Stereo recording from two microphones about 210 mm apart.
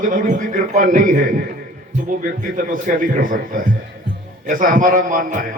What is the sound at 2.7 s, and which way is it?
A man's voice, 40° right (ahead or behind).